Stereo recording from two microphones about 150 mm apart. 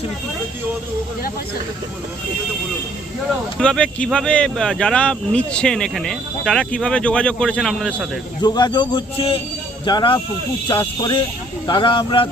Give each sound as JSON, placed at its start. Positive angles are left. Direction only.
{"t": 3.6, "sound": "speech", "side_deg": 5}
{"t": 8.4, "sound": "speech", "side_deg": 30}